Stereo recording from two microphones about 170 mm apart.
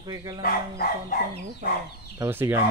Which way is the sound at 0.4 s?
65° left (ahead or behind).